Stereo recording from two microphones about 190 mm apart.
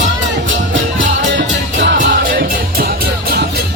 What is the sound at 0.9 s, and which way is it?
Music, 75° right (ahead or behind).